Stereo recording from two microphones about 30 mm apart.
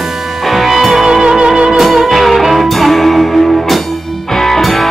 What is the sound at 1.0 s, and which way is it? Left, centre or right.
Music, centre.